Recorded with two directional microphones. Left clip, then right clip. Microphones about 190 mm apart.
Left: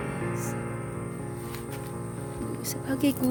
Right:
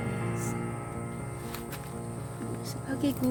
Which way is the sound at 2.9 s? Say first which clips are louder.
Left 4 dB; 30° left (ahead or behind).